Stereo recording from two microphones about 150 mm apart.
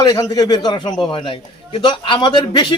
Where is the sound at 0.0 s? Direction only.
25° left (ahead or behind).